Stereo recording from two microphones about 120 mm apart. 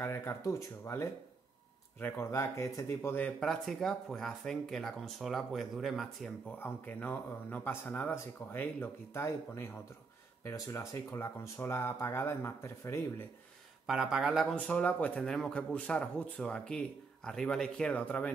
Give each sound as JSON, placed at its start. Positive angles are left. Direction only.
{"t": 0.0, "sound": "speech", "side_deg": 20}
{"t": 3.4, "sound": "speech", "side_deg": 5}
{"t": 6.6, "sound": "a man's voice", "side_deg": 15}
{"t": 13.8, "sound": "speech", "side_deg": -5}
{"t": 14.5, "sound": "a man's voice", "side_deg": 10}